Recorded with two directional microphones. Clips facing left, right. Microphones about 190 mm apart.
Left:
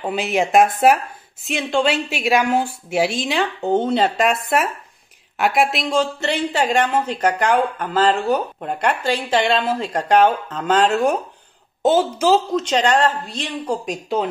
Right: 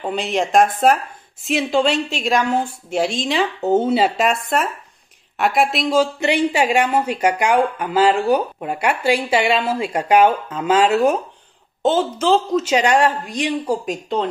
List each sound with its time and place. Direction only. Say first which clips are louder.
0.0 s a woman's voice: left 1 dB; 5° left (ahead or behind)
11.8 s speech: left 1 dB; 10° left (ahead or behind)
12.6 s speech: right 1 dB; 10° right (ahead or behind)
13.8 s a woman's voice: even; 5° left (ahead or behind)